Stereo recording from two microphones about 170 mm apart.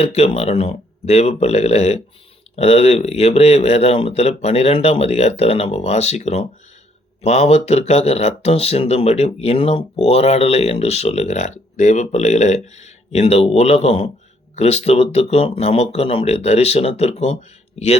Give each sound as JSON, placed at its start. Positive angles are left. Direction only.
{"t": 0.0, "sound": "speech", "side_deg": 35}